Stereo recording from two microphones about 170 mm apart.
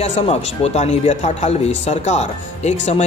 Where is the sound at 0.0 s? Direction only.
40° left (ahead or behind).